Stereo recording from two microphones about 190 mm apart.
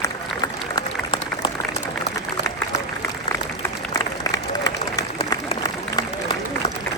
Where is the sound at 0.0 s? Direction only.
20° left (ahead or behind).